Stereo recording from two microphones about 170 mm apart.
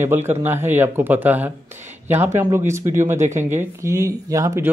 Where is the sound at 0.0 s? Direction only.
15° right (ahead or behind).